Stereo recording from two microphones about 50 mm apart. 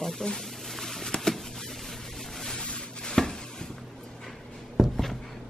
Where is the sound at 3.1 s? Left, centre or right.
Centre.